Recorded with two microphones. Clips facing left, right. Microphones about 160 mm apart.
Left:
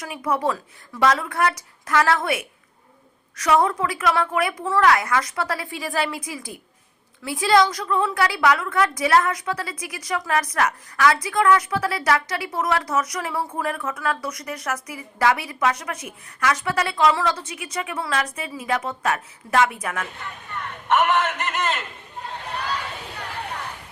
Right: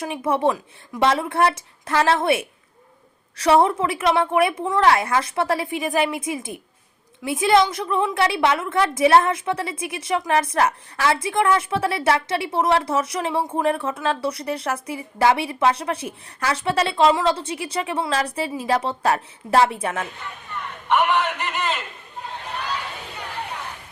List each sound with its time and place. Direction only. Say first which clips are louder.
0.0 s a woman's voice: right 3 dB; 25° right (ahead or behind)
20.9 s a man's voice: even; centre (ahead or behind)